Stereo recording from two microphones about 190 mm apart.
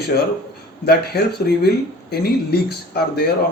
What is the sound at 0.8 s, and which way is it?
A man's voice, 55° left (ahead or behind).